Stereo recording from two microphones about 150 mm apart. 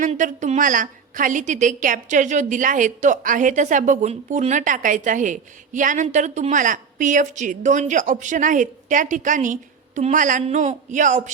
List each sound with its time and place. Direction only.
0.0 s a woman's voice: 55° right (ahead or behind)